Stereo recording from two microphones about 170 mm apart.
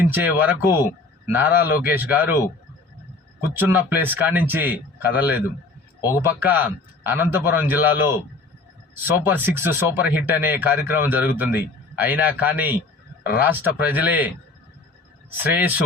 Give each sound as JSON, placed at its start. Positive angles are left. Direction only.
{"t": 0.0, "sound": "speech", "side_deg": -10}
{"t": 3.6, "sound": "speech", "side_deg": -10}
{"t": 6.0, "sound": "a man's voice", "side_deg": 20}
{"t": 6.4, "sound": "speech", "side_deg": -10}
{"t": 9.2, "sound": "speech", "side_deg": -10}